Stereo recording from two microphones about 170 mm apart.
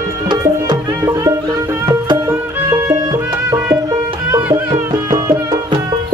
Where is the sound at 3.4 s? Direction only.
15° right (ahead or behind).